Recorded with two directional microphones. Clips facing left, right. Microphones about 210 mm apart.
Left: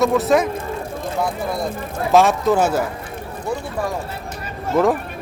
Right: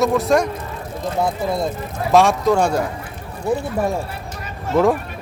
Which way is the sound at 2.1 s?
Centre (ahead or behind).